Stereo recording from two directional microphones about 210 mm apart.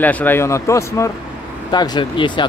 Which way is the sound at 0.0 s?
10° left (ahead or behind).